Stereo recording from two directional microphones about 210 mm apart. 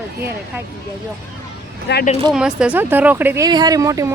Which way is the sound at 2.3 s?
5° right (ahead or behind).